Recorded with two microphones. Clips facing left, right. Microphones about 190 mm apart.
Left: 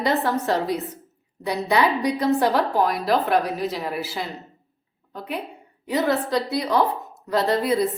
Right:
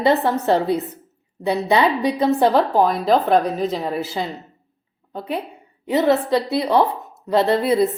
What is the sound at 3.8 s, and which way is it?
A woman's voice, 25° right (ahead or behind).